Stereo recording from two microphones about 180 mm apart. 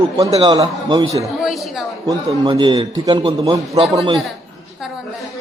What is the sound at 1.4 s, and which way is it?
Speech, centre (ahead or behind).